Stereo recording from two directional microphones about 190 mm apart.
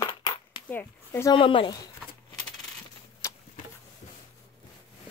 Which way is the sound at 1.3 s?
25° left (ahead or behind).